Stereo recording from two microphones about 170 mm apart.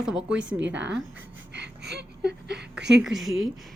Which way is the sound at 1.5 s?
75° right (ahead or behind).